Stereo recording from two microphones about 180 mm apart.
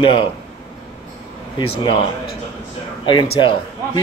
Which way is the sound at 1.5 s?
30° left (ahead or behind).